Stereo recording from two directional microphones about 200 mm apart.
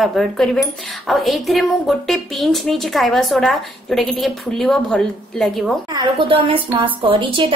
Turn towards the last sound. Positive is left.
turn(degrees=-25)  # may be behind; listen again after turning